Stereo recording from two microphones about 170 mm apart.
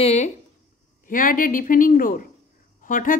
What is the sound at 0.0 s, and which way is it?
Speech, 40° left (ahead or behind).